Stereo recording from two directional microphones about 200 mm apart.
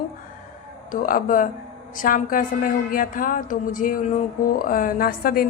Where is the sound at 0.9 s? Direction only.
45° left (ahead or behind).